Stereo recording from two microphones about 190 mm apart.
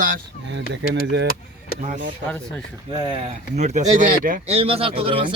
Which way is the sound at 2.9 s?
25° right (ahead or behind).